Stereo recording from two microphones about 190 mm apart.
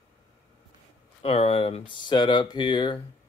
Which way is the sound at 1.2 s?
30° left (ahead or behind).